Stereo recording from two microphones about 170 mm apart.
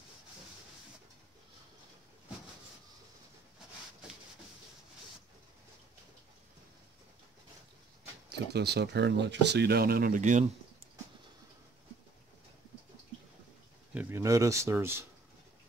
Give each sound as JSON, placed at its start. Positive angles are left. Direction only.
{"t": 8.3, "sound": "speech", "side_deg": -80}
{"t": 13.9, "sound": "speech", "side_deg": -15}